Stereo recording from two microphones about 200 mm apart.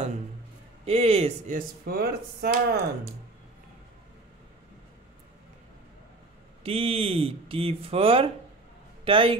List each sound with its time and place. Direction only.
0.8 s speech: 30° right (ahead or behind)
1.9 s speech: 50° right (ahead or behind)
6.6 s speech: 30° right (ahead or behind)